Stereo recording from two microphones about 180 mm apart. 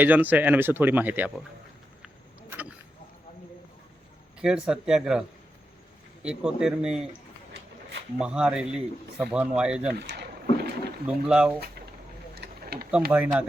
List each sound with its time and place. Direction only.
0.0 s speech: 10° right (ahead or behind)
2.5 s a sound: 10° right (ahead or behind)
4.4 s speech: 5° right (ahead or behind)
6.2 s speech: 5° right (ahead or behind)
8.2 s speech: 5° right (ahead or behind)
9.9 s a sound: 70° right (ahead or behind)
11.0 s speech: 5° right (ahead or behind)
12.4 s a sound: 60° right (ahead or behind)
13.1 s speech: 10° right (ahead or behind)